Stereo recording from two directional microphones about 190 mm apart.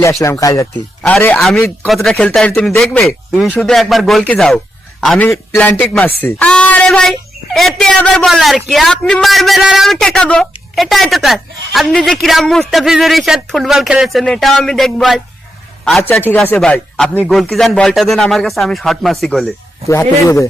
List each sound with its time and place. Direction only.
0.0 s speech: 15° left (ahead or behind)
1.0 s speech: 5° left (ahead or behind)
19.9 s speech: 15° left (ahead or behind)